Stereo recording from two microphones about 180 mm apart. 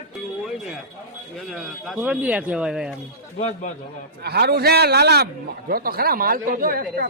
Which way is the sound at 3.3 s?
40° left (ahead or behind).